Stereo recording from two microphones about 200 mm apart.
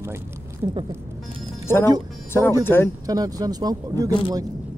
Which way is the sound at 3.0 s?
20° right (ahead or behind).